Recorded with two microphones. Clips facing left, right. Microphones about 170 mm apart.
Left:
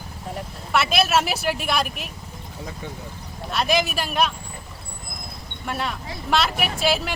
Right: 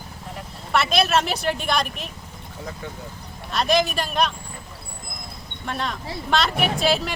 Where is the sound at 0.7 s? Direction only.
5° left (ahead or behind).